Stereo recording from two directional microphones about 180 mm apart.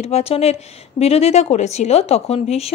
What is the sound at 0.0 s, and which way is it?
A woman's voice, 35° left (ahead or behind).